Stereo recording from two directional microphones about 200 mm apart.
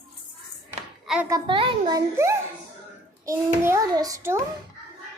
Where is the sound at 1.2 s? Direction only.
20° right (ahead or behind).